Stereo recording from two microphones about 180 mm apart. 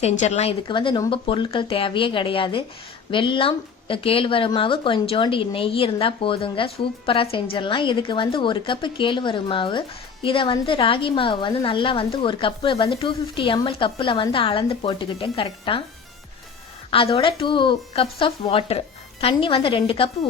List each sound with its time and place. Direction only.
0.0 s a woman's voice: 35° left (ahead or behind)
16.9 s a woman's voice: 30° left (ahead or behind)